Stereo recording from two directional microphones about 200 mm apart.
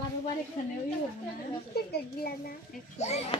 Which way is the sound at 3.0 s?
35° left (ahead or behind).